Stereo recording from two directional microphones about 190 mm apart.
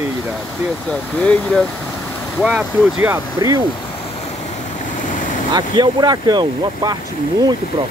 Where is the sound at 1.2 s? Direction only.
5° left (ahead or behind).